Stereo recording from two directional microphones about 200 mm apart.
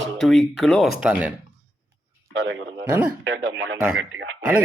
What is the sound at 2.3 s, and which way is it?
A man's voice, 65° right (ahead or behind).